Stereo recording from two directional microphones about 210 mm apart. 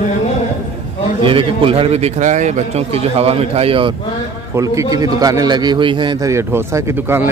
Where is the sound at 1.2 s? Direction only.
25° right (ahead or behind).